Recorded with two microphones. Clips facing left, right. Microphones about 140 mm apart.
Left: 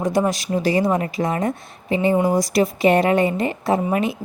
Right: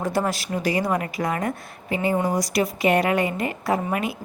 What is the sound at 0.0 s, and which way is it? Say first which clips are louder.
A woman's voice: left 4 dB; 15° left (ahead or behind).